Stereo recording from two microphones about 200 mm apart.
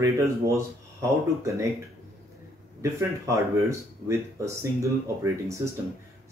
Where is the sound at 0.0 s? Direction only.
15° right (ahead or behind).